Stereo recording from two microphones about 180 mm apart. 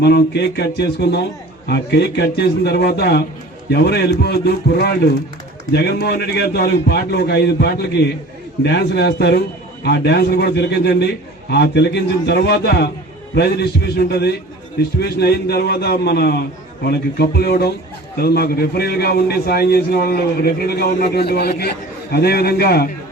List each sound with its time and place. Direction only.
0.0 s a man's voice: 65° left (ahead or behind)